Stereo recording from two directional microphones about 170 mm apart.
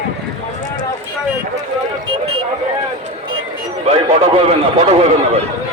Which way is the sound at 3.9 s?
35° right (ahead or behind).